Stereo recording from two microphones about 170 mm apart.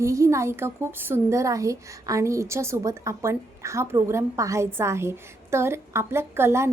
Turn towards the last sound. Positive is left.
turn(degrees=-15)  # may be behind; listen again after turning